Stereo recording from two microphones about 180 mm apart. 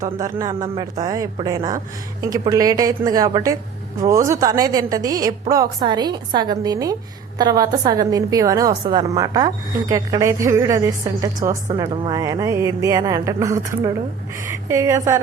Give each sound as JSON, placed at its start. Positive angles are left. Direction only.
{"t": 0.0, "sound": "a woman's voice", "side_deg": -15}